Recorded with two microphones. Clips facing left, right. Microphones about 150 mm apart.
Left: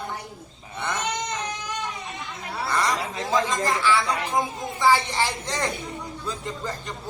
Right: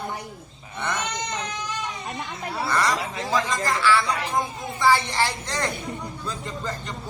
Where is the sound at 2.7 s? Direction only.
15° left (ahead or behind).